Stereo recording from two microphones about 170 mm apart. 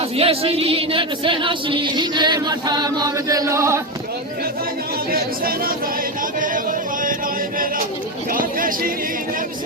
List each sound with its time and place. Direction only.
0.2 s speech: 35° right (ahead or behind); by 3.8 s 15° right (ahead or behind)
6.4 s a sound: 50° right (ahead or behind)
8.3 s chatter: 55° right (ahead or behind)